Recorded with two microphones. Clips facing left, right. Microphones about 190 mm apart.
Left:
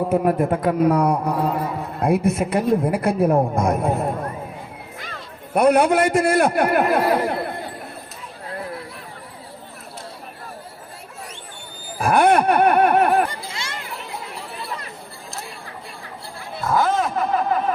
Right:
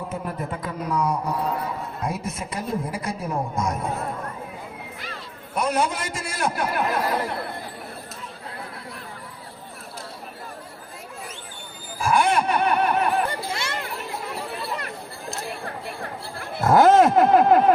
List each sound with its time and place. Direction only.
0.1 s a woman's voice: 60° left (ahead or behind)
5.5 s a woman's voice: 60° left (ahead or behind)
11.9 s a woman's voice: 60° left (ahead or behind)
13.5 s chatter: 55° right (ahead or behind)
15.6 s chatter: 60° right (ahead or behind); by 17.6 s 80° right